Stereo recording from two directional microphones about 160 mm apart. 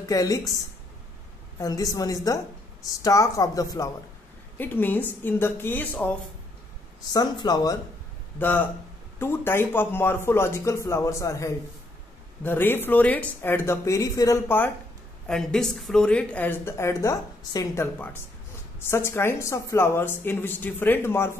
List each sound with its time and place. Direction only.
0.1 s a woman's voice: 20° left (ahead or behind)
1.6 s a woman's voice: 20° left (ahead or behind)
7.1 s a woman's voice: 25° left (ahead or behind)
8.4 s speech: 10° left (ahead or behind)
15.2 s speech: 5° left (ahead or behind)